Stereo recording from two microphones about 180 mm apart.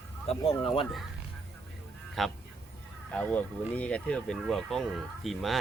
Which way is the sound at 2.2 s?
Centre (ahead or behind).